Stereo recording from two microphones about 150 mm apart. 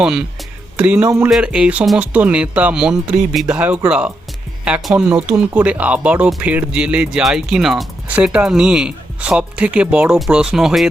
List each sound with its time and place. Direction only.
0.0 s speech: 5° right (ahead or behind)
1.3 s speech: 5° right (ahead or behind)